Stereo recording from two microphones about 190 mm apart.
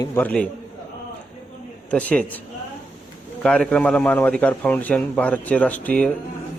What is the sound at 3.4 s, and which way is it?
A man's voice, 5° left (ahead or behind).